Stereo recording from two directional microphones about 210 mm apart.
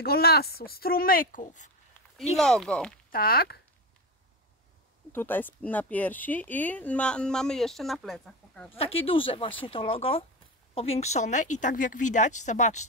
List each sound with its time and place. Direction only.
0.0 s a woman's voice: 50° left (ahead or behind)
2.3 s speech: 5° left (ahead or behind)
3.1 s speech: 45° left (ahead or behind)
5.1 s speech: 10° left (ahead or behind)
8.7 s speech: 25° left (ahead or behind)